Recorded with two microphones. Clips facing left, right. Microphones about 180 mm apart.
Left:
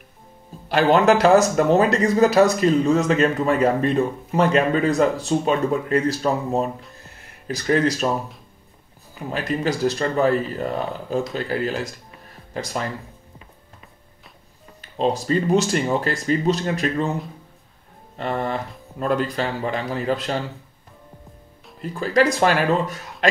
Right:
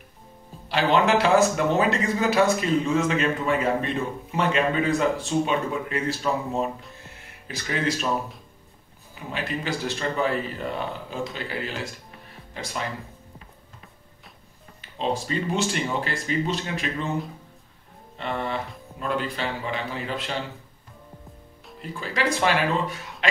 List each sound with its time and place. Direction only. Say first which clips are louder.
0.7 s speech: left 5 dB; 45° left (ahead or behind)
9.3 s speech: left 6 dB; 40° left (ahead or behind)
14.8 s speech: left 5 dB; 40° left (ahead or behind)
18.1 s music: left 4 dB; 45° left (ahead or behind)
18.9 s speech: left 6 dB; 40° left (ahead or behind)
22.0 s speech: left 6 dB; 40° left (ahead or behind)